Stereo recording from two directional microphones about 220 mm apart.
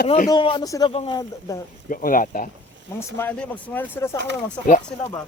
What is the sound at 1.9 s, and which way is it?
Speech, 40° left (ahead or behind).